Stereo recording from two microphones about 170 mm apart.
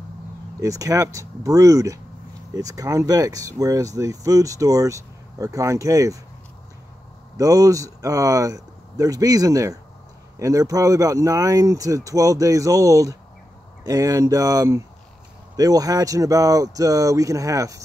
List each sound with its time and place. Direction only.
0.6 s speech: 20° right (ahead or behind)
7.3 s speech: 20° right (ahead or behind)